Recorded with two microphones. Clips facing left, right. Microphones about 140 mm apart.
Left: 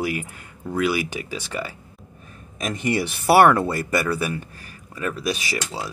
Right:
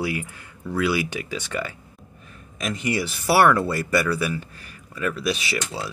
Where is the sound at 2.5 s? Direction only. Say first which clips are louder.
Left 1 dB; 45° left (ahead or behind).